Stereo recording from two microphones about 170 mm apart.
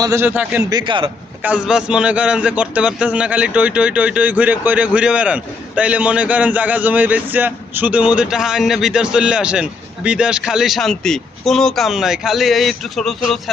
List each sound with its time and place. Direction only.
0.0 s a man's voice: 15° right (ahead or behind)
0.7 s a man's voice: 25° right (ahead or behind)
1.4 s a man's voice: 10° right (ahead or behind)